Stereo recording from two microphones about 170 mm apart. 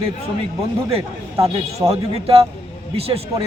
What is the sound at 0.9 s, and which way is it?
A man's voice, 35° right (ahead or behind).